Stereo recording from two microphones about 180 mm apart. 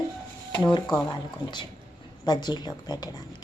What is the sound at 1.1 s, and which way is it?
Speech, 25° left (ahead or behind).